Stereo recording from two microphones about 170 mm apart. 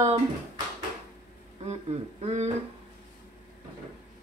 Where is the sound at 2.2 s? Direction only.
40° right (ahead or behind).